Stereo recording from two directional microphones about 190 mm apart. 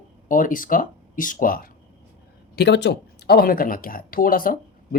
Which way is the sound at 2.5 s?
60° left (ahead or behind).